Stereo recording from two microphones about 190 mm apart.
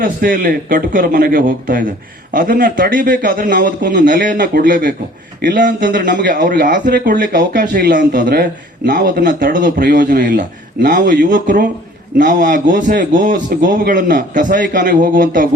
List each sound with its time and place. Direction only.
0.0 s a man's voice: 50° right (ahead or behind)